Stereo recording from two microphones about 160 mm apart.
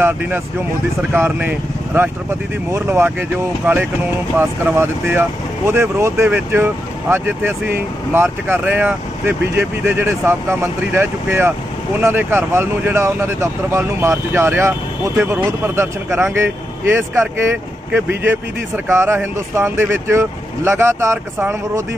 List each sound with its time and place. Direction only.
0.0 s speech: 10° right (ahead or behind)